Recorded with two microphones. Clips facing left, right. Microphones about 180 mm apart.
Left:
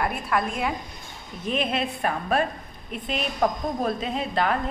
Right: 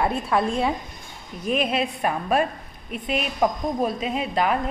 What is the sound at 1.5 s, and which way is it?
A woman's voice, 10° right (ahead or behind).